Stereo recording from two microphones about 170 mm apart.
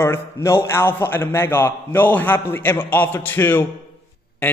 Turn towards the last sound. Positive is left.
turn(degrees=10)  # may be behind; listen again after turning